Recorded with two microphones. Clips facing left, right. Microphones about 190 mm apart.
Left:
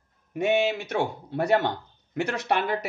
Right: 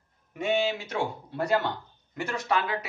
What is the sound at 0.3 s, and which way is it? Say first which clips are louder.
Speech: left 3 dB; 65° left (ahead or behind).